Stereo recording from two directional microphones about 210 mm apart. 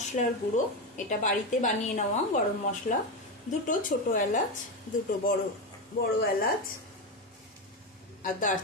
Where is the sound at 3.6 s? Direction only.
40° left (ahead or behind).